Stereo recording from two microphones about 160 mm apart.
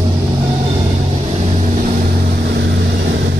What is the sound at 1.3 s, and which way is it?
Vehicle, 40° right (ahead or behind).